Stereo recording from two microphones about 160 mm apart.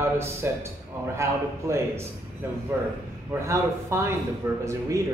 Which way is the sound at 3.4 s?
15° right (ahead or behind).